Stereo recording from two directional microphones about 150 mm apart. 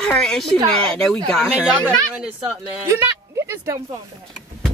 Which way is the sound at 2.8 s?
20° right (ahead or behind).